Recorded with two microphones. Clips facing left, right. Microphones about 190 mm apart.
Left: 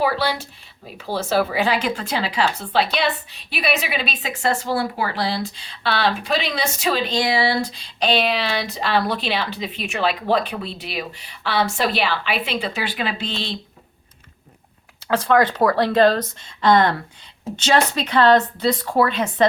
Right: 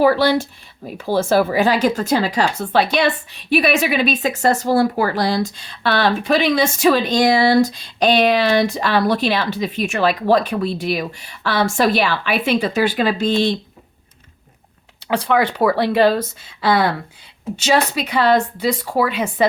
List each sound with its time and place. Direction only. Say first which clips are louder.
0.0 s speech: right 7 dB; 45° right (ahead or behind)
15.0 s speech: even; 15° right (ahead or behind)